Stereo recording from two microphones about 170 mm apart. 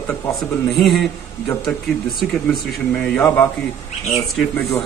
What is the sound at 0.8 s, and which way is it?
Speech, centre (ahead or behind).